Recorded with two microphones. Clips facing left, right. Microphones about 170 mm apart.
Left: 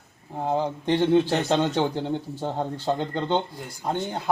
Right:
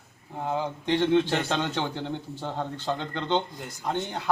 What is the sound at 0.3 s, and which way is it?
A man's voice, 15° left (ahead or behind).